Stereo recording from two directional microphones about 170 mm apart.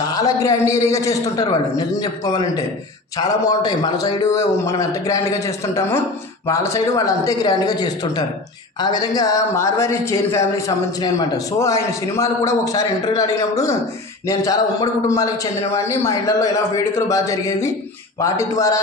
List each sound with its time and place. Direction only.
0.1 s a man's voice: 20° left (ahead or behind)